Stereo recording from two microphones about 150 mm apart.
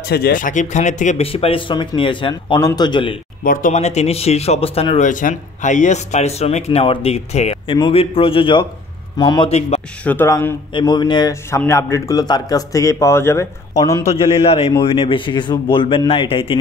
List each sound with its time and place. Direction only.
0.1 s a man's voice: 75° left (ahead or behind); by 3.2 s 30° left (ahead or behind)
3.4 s speech: 70° left (ahead or behind)
3.7 s a man's voice: 45° left (ahead or behind); by 9.5 s 30° left (ahead or behind)
9.5 s speech: 45° left (ahead or behind)
10.0 s speech: 15° left (ahead or behind)
10.7 s a man's voice: 30° left (ahead or behind)
14.0 s a man's voice: 45° left (ahead or behind)